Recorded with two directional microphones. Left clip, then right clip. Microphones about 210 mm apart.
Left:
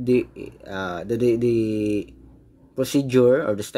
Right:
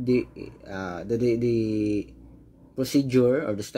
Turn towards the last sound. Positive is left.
turn(degrees=20)  # may be behind; listen again after turning